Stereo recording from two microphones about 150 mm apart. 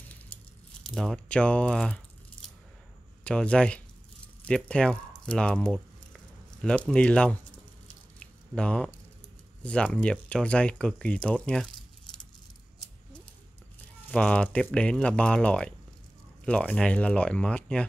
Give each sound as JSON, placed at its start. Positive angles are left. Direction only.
{"t": 0.8, "sound": "speech", "side_deg": 5}
{"t": 3.3, "sound": "speech", "side_deg": 5}
{"t": 4.5, "sound": "a sound", "side_deg": 5}
{"t": 6.9, "sound": "speech", "side_deg": 5}
{"t": 8.2, "sound": "squish", "side_deg": 5}
{"t": 9.6, "sound": "speech", "side_deg": 5}
{"t": 14.0, "sound": "speech", "side_deg": 10}